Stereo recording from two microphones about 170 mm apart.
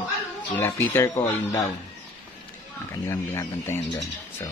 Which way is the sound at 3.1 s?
15° left (ahead or behind).